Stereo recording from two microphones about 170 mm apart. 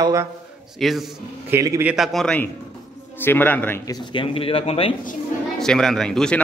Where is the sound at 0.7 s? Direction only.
Centre (ahead or behind).